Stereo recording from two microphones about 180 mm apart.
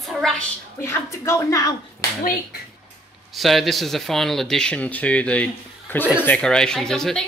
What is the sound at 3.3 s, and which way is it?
A woman's voice, centre (ahead or behind).